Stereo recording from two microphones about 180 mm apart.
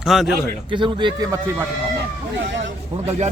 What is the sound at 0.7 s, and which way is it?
Speech, 25° right (ahead or behind).